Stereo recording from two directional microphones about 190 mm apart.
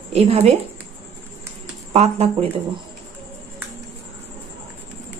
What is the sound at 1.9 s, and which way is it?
Speech, 30° right (ahead or behind).